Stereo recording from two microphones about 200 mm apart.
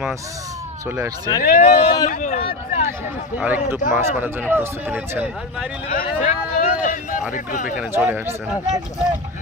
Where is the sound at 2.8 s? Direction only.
10° right (ahead or behind).